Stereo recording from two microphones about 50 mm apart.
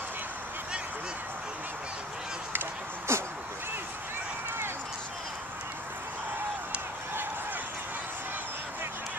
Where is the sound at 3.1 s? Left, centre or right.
Right.